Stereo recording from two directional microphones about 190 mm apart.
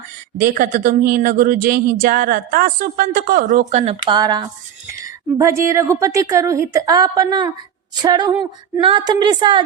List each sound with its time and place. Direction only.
0.3 s a woman's voice: 50° right (ahead or behind); by 9.6 s 25° right (ahead or behind)